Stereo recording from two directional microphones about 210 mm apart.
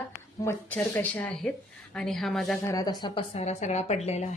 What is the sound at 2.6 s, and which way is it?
A woman's voice, 15° left (ahead or behind).